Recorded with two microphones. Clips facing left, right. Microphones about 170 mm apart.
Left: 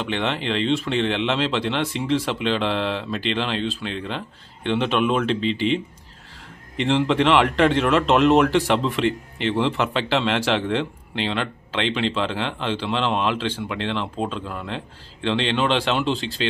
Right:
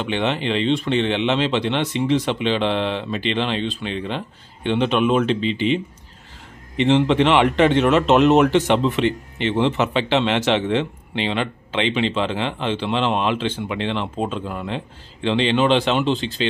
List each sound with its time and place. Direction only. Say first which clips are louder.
0.0 s speech: right 3 dB; centre (ahead or behind)
6.8 s speech: right 3 dB; centre (ahead or behind)